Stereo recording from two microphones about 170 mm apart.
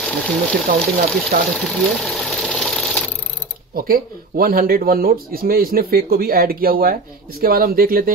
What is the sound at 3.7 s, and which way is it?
Speech, 60° right (ahead or behind).